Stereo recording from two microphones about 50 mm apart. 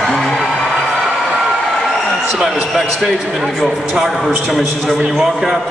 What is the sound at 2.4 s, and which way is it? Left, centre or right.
A man's voice, centre.